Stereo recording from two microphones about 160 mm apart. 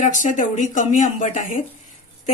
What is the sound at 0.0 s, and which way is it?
A woman's voice, 50° left (ahead or behind).